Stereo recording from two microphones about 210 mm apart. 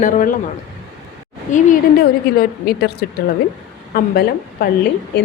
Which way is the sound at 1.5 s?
40° left (ahead or behind).